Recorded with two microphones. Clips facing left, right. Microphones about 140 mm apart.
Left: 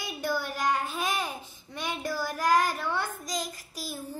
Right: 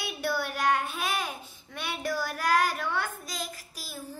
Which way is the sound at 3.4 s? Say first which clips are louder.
Left 2 dB; 45° left (ahead or behind).